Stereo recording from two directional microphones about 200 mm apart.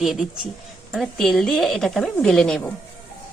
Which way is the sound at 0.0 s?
Centre (ahead or behind).